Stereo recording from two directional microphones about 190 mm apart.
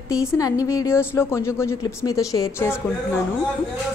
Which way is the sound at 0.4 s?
20° left (ahead or behind).